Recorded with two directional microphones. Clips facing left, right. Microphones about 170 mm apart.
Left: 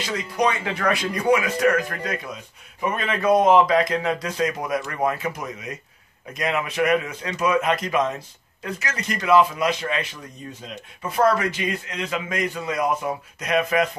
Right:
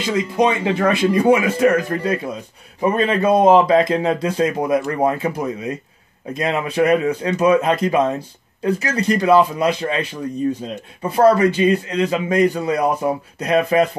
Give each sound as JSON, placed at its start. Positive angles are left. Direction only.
{"t": 0.4, "sound": "a man's voice", "side_deg": -25}